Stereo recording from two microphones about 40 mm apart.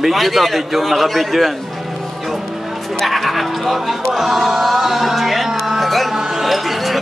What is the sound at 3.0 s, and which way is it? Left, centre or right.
Speech, centre.